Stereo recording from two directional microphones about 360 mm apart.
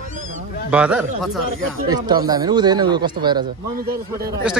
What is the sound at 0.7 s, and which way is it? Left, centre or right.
Speech, centre.